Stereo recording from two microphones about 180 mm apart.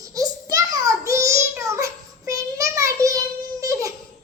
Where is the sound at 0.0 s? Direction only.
20° right (ahead or behind).